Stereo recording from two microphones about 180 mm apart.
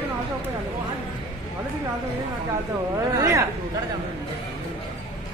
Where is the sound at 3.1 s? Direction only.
15° right (ahead or behind).